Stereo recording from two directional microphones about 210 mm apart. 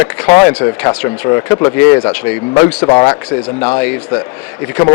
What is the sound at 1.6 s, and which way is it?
Speech, 20° left (ahead or behind).